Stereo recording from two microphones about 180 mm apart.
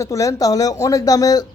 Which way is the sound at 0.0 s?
20° left (ahead or behind).